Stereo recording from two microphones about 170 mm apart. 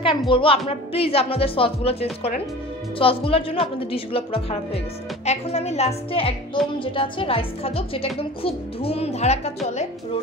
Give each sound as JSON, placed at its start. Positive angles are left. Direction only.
{"t": 0.3, "sound": "a woman's voice", "side_deg": 30}